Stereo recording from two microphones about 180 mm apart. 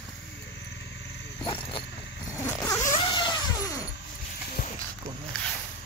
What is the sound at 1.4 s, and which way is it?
Wild animals, 30° left (ahead or behind).